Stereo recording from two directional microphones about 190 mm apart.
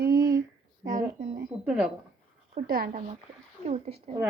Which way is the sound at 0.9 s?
45° right (ahead or behind).